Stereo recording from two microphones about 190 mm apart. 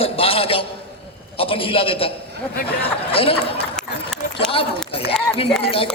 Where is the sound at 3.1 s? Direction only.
30° left (ahead or behind).